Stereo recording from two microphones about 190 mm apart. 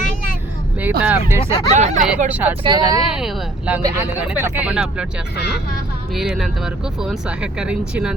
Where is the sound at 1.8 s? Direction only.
40° right (ahead or behind).